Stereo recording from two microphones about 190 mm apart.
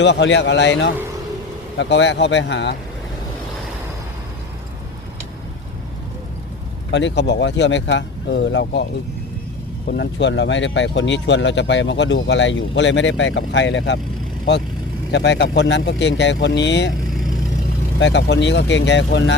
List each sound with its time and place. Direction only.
0.0 s speech: 70° left (ahead or behind)
6.9 s speech: 65° left (ahead or behind)
15.1 s speech: 65° left (ahead or behind)
18.0 s speech: 65° left (ahead or behind)